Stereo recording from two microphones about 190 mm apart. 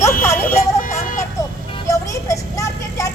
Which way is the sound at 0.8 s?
45° left (ahead or behind).